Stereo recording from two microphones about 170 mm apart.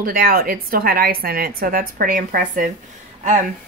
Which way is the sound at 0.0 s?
60° right (ahead or behind).